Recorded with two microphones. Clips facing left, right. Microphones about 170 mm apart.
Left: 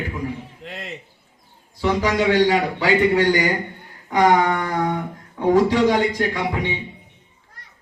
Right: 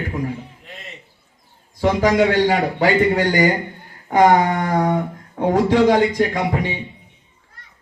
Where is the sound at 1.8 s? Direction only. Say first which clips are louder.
Right 4 dB; 45° right (ahead or behind).